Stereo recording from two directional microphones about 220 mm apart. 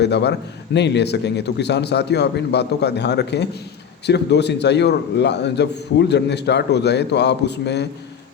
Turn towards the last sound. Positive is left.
turn(degrees=50)  # may be behind; listen again after turning